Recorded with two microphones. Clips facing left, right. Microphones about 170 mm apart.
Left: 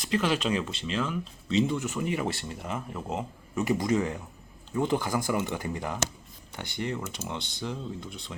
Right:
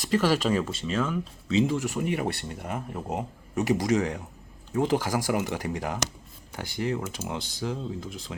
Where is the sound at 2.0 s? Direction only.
60° right (ahead or behind).